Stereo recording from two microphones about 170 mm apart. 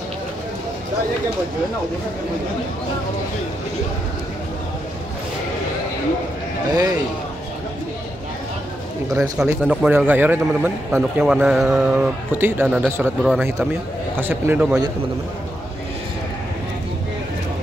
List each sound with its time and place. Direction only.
6.7 s a man's voice: 20° right (ahead or behind)
9.1 s a man's voice: 5° right (ahead or behind)
14.1 s a man's voice: 15° right (ahead or behind)